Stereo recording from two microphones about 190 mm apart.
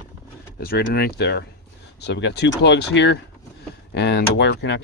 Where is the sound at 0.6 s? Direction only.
55° left (ahead or behind).